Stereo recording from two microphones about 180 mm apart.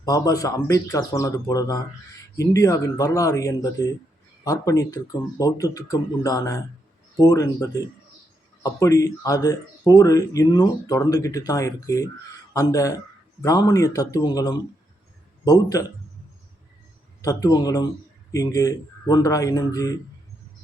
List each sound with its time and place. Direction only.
0.0 s speech: 20° left (ahead or behind)
15.7 s speech: 20° left (ahead or behind)
17.2 s speech: 20° left (ahead or behind)